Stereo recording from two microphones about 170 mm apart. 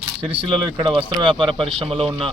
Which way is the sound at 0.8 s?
30° right (ahead or behind).